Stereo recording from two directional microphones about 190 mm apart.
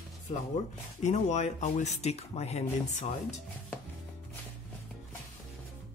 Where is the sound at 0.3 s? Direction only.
35° left (ahead or behind).